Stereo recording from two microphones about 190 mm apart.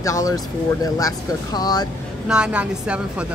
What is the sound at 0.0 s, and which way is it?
Speech, 15° left (ahead or behind).